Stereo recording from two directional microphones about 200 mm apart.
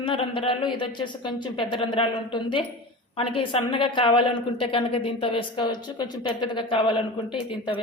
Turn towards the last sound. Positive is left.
turn(degrees=25)  # may be behind; listen again after turning